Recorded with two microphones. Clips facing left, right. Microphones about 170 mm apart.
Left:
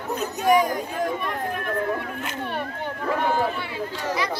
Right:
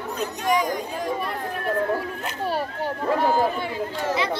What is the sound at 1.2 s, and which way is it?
Chatter, 35° right (ahead or behind).